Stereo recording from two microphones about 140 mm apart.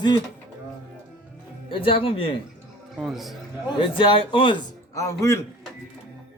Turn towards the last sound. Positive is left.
turn(degrees=20)  # may be behind; listen again after turning